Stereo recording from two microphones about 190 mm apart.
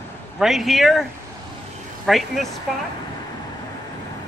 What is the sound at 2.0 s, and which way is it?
Speech, centre (ahead or behind).